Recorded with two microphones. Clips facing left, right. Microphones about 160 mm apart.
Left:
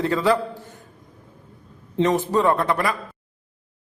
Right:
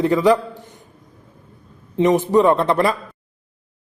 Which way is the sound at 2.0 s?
20° right (ahead or behind).